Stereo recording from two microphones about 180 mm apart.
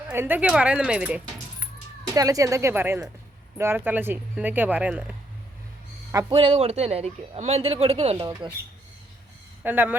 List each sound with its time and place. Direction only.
0.1 s speech: 10° right (ahead or behind)
2.1 s speech: 20° right (ahead or behind)
6.1 s speech: 20° right (ahead or behind)
6.3 s speech: 30° right (ahead or behind)
9.6 s speech: 10° right (ahead or behind)